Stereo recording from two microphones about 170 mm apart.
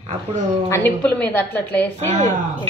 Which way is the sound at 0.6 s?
15° left (ahead or behind).